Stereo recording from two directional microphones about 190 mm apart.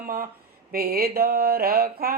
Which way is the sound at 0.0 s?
50° right (ahead or behind).